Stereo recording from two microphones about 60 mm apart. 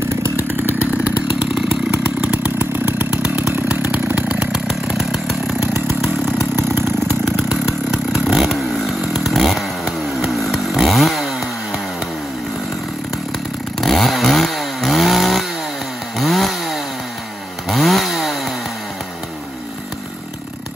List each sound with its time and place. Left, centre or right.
1.4 s chainsaw: right
2.6 s chainsaw: right
3.9 s chainsaw: right
4.9 s chainsaw: centre
5.6 s chainsaw: right
7.2 s chainsaw: centre
7.6 s chainsaw: centre
8.3 s motorcycle: centre
9.0 s chainsaw: centre
13.7 s chainsaw: centre